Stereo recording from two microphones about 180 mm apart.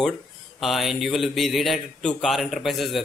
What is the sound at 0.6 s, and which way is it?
A man's voice, centre (ahead or behind).